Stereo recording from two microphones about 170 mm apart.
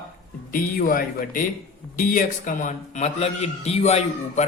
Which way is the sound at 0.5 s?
55° left (ahead or behind).